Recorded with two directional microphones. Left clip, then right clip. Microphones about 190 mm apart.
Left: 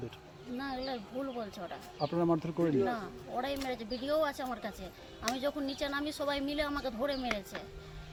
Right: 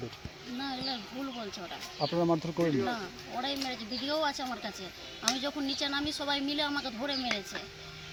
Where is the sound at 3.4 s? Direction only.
20° left (ahead or behind).